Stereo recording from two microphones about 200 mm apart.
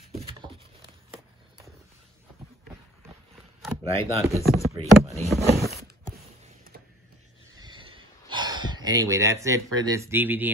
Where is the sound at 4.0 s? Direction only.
30° right (ahead or behind).